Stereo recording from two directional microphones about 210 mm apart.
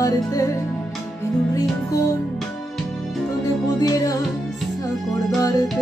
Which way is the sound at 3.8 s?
15° left (ahead or behind).